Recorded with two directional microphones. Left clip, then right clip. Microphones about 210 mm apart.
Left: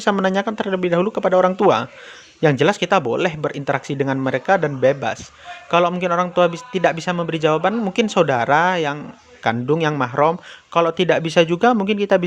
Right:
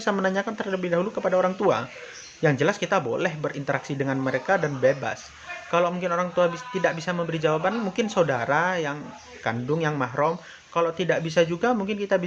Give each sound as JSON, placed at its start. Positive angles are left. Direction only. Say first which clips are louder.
{"t": 0.0, "sound": "speech", "louder": "left 6 dB", "side_deg": 40}